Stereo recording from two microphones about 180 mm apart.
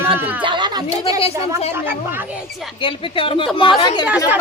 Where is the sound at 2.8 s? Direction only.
30° left (ahead or behind).